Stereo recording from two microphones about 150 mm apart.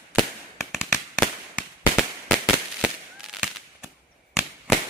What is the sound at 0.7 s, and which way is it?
Fireworks, 5° right (ahead or behind).